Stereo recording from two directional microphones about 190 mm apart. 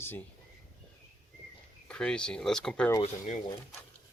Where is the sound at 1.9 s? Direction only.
5° left (ahead or behind).